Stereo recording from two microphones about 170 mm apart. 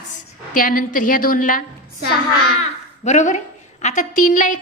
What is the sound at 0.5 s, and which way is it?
A woman's voice, 55° left (ahead or behind).